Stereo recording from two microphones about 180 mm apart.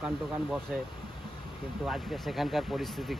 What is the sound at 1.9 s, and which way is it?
Speech, centre (ahead or behind).